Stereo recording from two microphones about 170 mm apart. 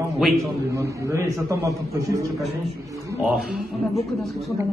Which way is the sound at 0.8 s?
20° right (ahead or behind).